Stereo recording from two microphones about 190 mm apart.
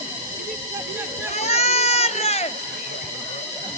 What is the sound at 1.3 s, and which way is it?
Run, 35° left (ahead or behind).